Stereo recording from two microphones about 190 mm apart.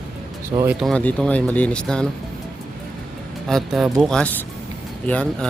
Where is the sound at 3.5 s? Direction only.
Centre (ahead or behind).